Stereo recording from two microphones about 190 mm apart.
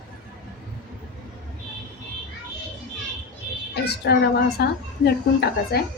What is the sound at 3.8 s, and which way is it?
A child's voice, 60° left (ahead or behind).